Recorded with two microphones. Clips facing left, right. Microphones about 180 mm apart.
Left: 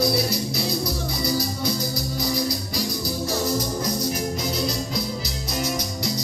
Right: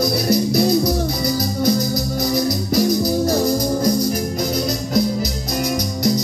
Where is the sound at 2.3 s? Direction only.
50° right (ahead or behind).